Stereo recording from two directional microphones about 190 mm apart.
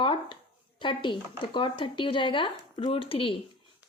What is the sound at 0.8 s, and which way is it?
A woman's voice, 25° left (ahead or behind).